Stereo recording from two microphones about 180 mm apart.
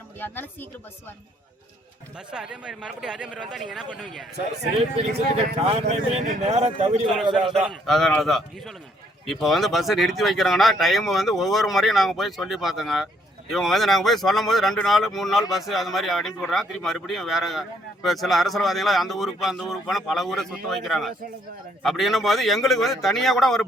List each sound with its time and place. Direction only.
0.2 s speech: 10° left (ahead or behind)
2.1 s speech: 5° right (ahead or behind)
5.6 s speech: 35° right (ahead or behind)
7.3 s speech: centre (ahead or behind)